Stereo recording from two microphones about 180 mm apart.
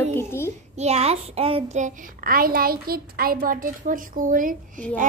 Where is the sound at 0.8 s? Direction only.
35° right (ahead or behind).